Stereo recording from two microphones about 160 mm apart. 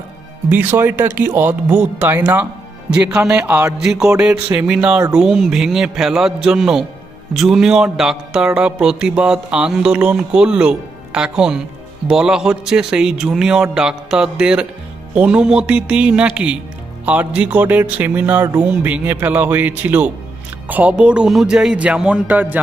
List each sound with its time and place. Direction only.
0.5 s speech: 10° right (ahead or behind)
4.9 s speech: 15° right (ahead or behind)
5.2 s speech: centre (ahead or behind)